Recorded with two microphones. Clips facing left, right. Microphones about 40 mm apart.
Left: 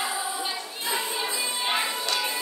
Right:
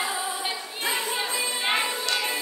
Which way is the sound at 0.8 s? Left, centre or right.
Right.